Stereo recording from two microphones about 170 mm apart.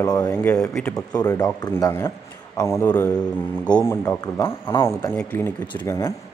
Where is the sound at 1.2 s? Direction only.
20° left (ahead or behind).